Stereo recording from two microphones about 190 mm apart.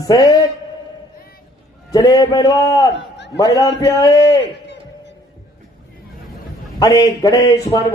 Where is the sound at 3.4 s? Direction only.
20° left (ahead or behind).